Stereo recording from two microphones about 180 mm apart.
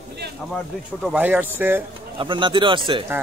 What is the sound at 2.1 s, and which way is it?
Speech, 25° right (ahead or behind).